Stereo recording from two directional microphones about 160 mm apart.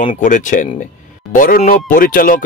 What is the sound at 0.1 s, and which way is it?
Speech, 50° left (ahead or behind).